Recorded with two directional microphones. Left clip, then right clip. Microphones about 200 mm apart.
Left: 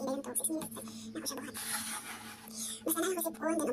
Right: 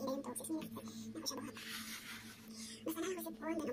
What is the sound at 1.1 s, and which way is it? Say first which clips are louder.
Speech: left 4 dB; 5° right (ahead or behind).